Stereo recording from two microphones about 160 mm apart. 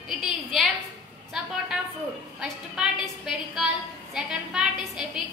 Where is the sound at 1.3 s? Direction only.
Centre (ahead or behind).